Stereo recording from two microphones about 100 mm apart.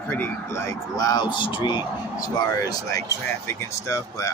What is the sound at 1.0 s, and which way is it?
A man's voice, 45° left (ahead or behind).